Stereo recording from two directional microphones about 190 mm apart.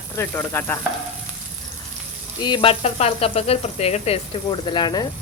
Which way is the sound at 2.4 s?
25° left (ahead or behind).